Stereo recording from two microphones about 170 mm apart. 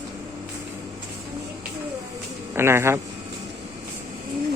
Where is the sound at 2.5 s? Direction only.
15° right (ahead or behind).